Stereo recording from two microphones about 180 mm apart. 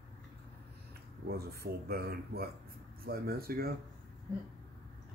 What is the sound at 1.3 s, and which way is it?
Speech, 60° right (ahead or behind).